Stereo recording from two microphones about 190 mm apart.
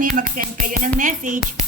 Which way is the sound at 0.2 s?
45° right (ahead or behind).